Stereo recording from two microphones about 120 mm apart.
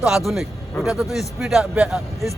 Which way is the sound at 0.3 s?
Centre (ahead or behind).